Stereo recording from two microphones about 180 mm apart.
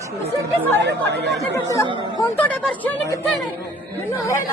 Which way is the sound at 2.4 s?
10° left (ahead or behind).